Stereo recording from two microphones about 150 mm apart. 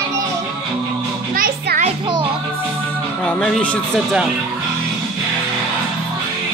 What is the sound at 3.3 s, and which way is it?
Speech, centre (ahead or behind).